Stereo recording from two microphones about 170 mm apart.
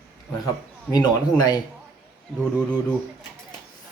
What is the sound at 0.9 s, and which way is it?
Speech, 25° left (ahead or behind).